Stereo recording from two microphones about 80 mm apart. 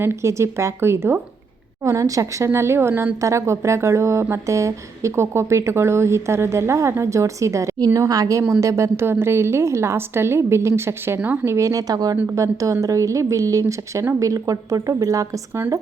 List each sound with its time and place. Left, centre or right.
0.0 s speech: right
1.8 s speech: right
2.5 s a woman's voice: right